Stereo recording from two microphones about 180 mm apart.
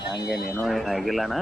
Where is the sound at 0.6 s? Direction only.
Centre (ahead or behind).